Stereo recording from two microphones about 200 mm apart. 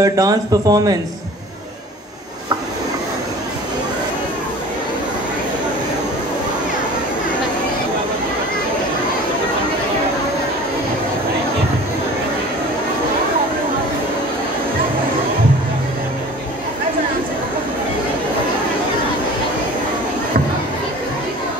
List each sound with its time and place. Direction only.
0.0 s speech: 20° right (ahead or behind)